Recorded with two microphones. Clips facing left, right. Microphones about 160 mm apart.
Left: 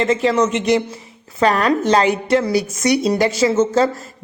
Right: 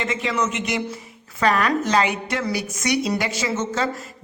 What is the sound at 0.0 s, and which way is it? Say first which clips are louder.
Speech: left 8 dB; 35° left (ahead or behind).